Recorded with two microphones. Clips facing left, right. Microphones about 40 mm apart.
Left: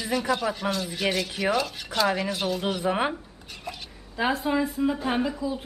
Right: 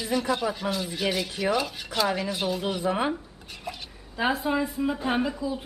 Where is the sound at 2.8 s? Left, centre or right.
Centre.